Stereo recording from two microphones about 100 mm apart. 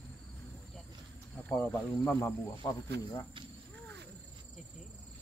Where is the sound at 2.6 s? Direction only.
35° left (ahead or behind).